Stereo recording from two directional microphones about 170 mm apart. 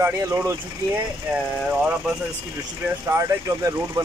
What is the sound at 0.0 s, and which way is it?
Speech, 15° right (ahead or behind).